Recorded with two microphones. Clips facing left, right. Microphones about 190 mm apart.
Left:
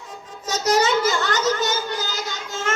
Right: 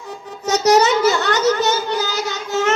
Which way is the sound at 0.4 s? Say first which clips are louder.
Right 6 dB; 70° right (ahead or behind).